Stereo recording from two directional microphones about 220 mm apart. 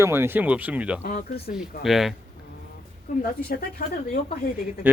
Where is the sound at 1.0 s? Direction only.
35° left (ahead or behind).